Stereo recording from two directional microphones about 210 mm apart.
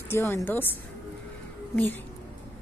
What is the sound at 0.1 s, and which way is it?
Speech, 10° left (ahead or behind).